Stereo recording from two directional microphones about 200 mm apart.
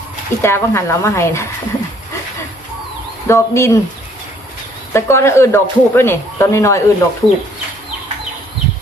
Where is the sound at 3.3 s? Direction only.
15° left (ahead or behind).